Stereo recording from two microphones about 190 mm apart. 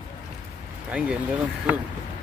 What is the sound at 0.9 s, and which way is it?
Speech, 5° right (ahead or behind).